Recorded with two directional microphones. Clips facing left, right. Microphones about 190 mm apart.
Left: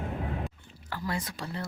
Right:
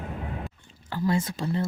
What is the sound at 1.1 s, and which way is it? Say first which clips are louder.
Speech: right 9 dB; 25° right (ahead or behind).